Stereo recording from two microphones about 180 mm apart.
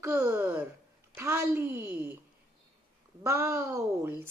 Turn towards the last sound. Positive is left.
turn(degrees=-15)  # may be behind; listen again after turning